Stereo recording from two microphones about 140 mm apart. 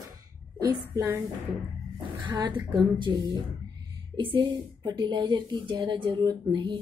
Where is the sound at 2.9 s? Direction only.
35° right (ahead or behind).